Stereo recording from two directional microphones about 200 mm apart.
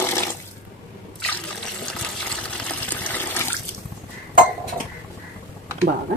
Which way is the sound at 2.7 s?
10° left (ahead or behind).